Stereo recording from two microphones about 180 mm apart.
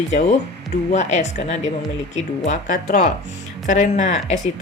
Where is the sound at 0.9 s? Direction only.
40° left (ahead or behind).